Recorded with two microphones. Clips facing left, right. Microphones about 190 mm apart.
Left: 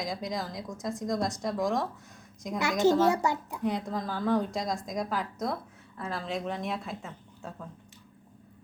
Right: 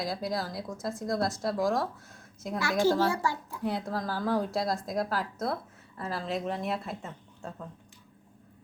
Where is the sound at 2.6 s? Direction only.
20° left (ahead or behind).